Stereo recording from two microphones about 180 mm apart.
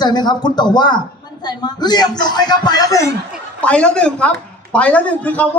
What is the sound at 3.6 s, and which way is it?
A man's voice, 5° left (ahead or behind).